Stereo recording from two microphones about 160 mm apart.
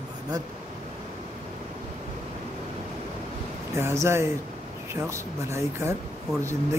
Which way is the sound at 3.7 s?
15° right (ahead or behind).